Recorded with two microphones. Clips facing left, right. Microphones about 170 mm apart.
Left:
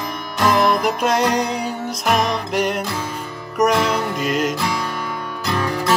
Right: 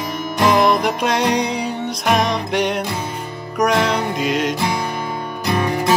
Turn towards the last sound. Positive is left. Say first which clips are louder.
# right 3 dB
turn(degrees=-20)  # may be behind; listen again after turning